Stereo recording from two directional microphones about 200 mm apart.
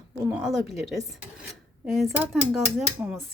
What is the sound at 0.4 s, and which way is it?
Speech, centre (ahead or behind).